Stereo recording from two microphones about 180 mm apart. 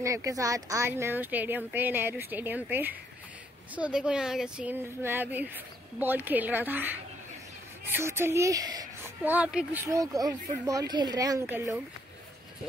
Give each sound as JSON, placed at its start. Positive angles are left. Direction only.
{"t": 0.0, "sound": "speech", "side_deg": -20}
{"t": 9.2, "sound": "speech", "side_deg": -10}